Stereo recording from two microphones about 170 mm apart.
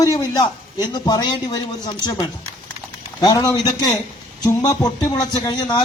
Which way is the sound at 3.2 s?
20° left (ahead or behind).